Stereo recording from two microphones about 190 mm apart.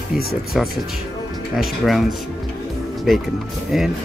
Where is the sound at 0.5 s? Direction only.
Centre (ahead or behind).